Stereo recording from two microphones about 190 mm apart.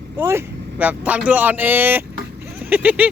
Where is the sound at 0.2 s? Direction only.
15° right (ahead or behind).